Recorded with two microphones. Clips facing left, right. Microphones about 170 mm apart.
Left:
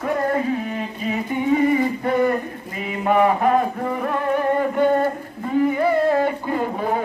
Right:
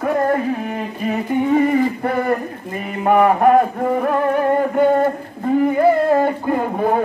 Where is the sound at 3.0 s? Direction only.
50° right (ahead or behind).